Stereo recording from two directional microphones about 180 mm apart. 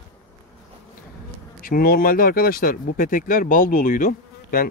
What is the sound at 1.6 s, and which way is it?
Speech, 55° left (ahead or behind).